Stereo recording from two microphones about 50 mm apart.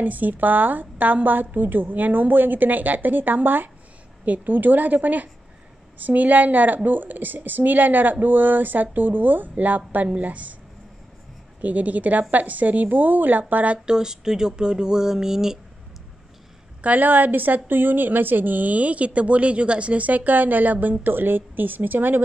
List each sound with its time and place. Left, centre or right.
0.0 s a woman's voice: right
11.6 s a woman's voice: right
13.8 s speech: centre
16.8 s a woman's voice: right